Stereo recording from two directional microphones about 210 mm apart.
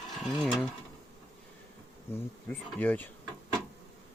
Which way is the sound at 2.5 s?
10° left (ahead or behind).